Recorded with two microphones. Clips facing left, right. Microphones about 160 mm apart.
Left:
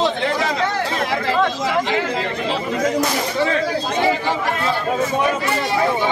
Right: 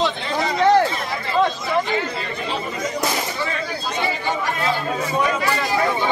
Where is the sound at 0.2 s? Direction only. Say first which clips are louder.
Even; 80° left.